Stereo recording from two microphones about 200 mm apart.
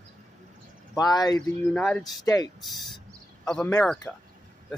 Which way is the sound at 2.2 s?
20° left (ahead or behind).